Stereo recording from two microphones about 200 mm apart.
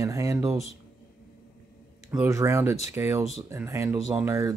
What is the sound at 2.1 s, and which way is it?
Speech, 15° right (ahead or behind).